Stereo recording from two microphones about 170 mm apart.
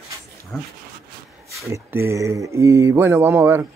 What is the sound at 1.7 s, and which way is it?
Speech, 15° right (ahead or behind).